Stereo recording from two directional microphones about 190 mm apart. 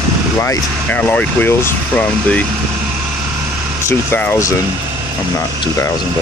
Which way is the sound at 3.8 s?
15° left (ahead or behind).